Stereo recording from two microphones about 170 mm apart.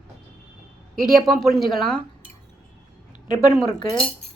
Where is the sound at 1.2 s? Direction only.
Centre (ahead or behind).